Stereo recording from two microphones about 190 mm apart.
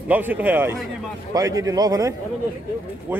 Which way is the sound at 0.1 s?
10° right (ahead or behind).